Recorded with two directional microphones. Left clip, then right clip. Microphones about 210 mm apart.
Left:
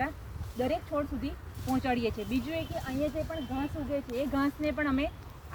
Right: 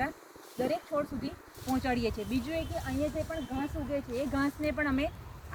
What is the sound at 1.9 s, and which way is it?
Speech, 35° left (ahead or behind).